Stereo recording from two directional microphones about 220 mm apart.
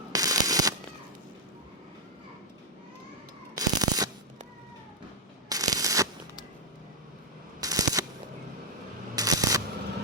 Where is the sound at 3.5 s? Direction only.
15° right (ahead or behind).